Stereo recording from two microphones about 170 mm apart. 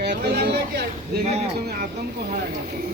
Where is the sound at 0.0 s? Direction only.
75° right (ahead or behind).